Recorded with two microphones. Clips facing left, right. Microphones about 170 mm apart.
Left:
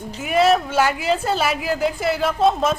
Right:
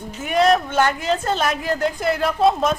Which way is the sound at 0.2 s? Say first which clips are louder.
Even; 5° left (ahead or behind).